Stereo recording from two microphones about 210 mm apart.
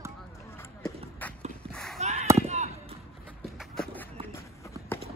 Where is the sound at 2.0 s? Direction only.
30° right (ahead or behind).